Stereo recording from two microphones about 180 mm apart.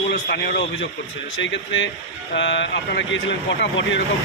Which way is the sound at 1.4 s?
90° left.